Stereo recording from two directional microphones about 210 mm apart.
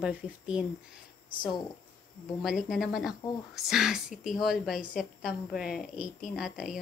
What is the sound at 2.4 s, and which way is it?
A woman's voice, centre (ahead or behind).